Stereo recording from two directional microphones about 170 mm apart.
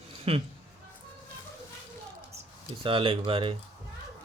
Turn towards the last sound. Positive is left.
turn(degrees=-30)  # may be behind; listen again after turning